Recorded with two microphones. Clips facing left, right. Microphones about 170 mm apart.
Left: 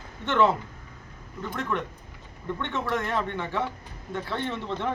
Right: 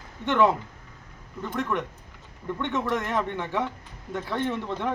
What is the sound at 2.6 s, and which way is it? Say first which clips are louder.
A man's voice: right 2 dB; 15° right (ahead or behind).